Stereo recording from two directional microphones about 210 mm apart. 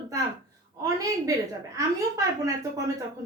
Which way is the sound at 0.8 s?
15° right (ahead or behind).